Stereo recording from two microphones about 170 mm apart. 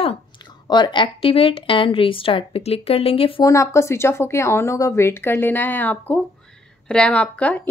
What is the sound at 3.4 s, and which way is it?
Speech, 20° left (ahead or behind).